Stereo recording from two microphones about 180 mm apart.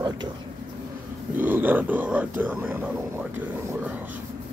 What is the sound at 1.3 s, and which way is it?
Speech, 10° right (ahead or behind).